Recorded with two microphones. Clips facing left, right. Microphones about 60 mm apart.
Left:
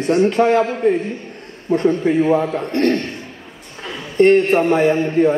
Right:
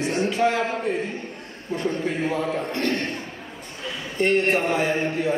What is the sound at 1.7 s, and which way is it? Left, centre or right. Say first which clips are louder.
A man's voice: left 10 dB; left.